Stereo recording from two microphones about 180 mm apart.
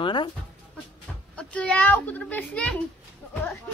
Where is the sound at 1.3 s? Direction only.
5° left (ahead or behind).